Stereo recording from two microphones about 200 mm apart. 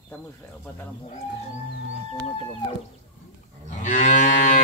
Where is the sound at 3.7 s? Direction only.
40° left (ahead or behind).